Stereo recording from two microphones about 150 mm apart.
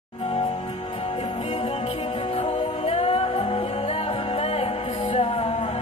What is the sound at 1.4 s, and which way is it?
Music, 45° left (ahead or behind).